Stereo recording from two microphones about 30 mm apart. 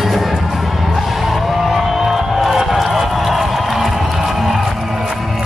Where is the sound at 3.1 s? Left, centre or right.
Centre.